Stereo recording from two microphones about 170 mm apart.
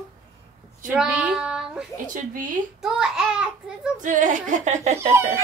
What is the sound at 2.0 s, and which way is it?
Speech, 50° right (ahead or behind).